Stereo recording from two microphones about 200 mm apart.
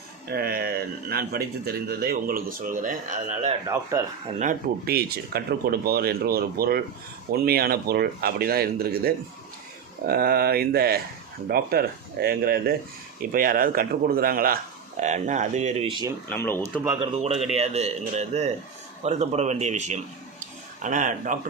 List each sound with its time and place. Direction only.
0.3 s speech: 50° right (ahead or behind); by 16.1 s 20° right (ahead or behind)
16.3 s speech: 10° left (ahead or behind)
17.0 s speech: 30° right (ahead or behind)
20.4 s a sound: 40° right (ahead or behind)